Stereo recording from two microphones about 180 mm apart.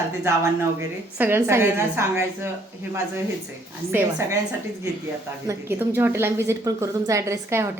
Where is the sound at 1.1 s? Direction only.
15° right (ahead or behind).